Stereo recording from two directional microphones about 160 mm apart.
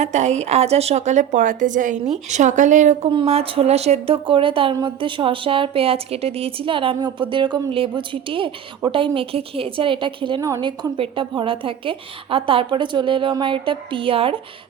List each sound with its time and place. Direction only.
0.0 s a woman's voice: 45° right (ahead or behind)
3.1 s a woman's voice: 35° right (ahead or behind)